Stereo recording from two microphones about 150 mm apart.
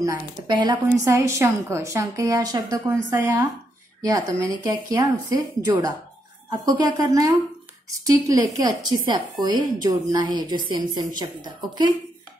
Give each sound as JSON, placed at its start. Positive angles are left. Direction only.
{"t": 0.0, "sound": "a woman's voice", "side_deg": -25}